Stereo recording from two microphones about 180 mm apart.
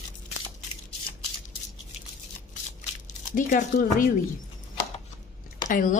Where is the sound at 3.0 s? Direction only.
45° left (ahead or behind).